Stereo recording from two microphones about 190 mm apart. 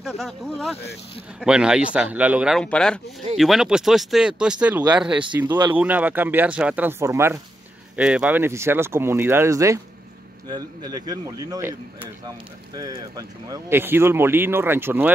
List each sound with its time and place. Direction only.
0.0 s speech: centre (ahead or behind)